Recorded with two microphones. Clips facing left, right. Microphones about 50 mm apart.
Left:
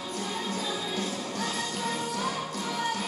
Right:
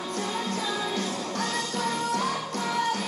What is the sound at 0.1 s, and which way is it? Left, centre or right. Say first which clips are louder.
Music: right 3 dB; right.